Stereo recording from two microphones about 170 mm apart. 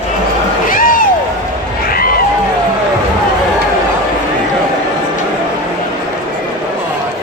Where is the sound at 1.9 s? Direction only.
60° left (ahead or behind).